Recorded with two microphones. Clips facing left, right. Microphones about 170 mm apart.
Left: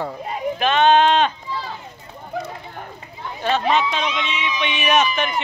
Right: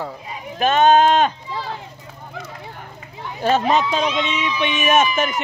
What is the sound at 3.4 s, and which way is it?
Speech, 40° right (ahead or behind).